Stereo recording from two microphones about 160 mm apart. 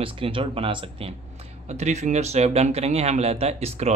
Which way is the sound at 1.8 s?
45° right (ahead or behind).